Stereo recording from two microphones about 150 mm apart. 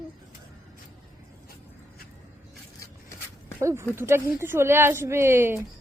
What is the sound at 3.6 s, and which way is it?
A woman's voice, 20° right (ahead or behind).